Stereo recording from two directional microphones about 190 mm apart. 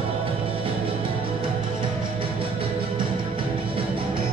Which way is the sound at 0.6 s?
30° right (ahead or behind).